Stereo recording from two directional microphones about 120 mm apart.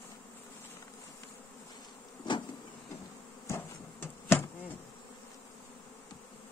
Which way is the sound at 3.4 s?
20° left (ahead or behind).